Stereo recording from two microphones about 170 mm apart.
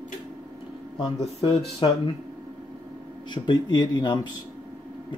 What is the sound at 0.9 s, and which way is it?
Speech, 30° left (ahead or behind).